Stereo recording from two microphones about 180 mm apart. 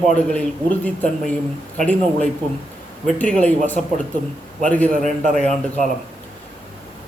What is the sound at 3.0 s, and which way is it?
Speech, 5° left (ahead or behind).